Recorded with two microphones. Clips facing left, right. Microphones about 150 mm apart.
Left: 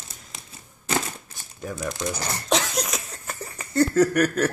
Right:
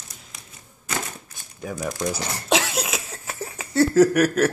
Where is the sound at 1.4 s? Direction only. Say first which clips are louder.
Right 2 dB; centre (ahead or behind).